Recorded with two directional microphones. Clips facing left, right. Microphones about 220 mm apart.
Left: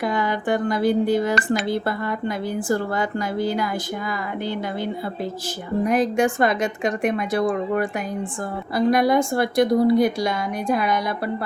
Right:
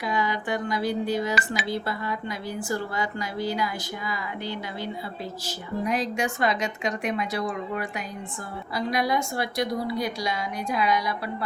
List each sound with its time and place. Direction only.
0.0 s a woman's voice: 55° left (ahead or behind)
5.8 s a woman's voice: 50° left (ahead or behind)